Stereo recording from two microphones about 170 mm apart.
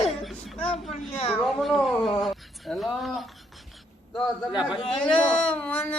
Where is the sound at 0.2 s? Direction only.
Centre (ahead or behind).